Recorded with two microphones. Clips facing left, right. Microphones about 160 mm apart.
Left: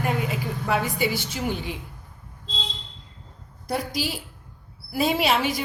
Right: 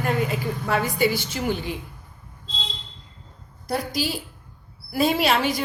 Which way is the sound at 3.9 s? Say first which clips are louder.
Right 2 dB; 10° left (ahead or behind).